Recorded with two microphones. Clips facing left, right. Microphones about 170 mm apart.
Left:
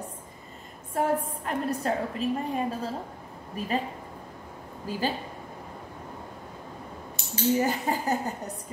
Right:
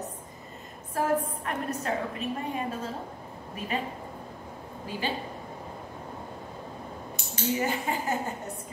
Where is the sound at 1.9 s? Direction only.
35° left (ahead or behind).